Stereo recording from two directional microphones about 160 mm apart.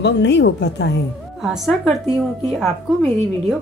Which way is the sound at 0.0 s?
90° left.